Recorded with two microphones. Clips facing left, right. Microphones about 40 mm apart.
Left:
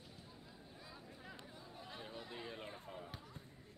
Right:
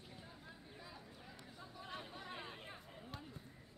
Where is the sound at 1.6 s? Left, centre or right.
Right.